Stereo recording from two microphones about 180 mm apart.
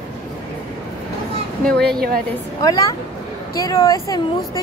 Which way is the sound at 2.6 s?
20° left (ahead or behind).